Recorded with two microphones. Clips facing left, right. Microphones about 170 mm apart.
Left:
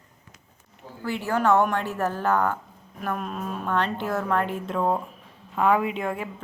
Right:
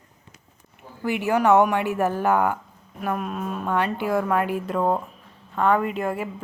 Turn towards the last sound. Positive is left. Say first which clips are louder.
# right 2 dB
turn(degrees=-5)  # may be behind; listen again after turning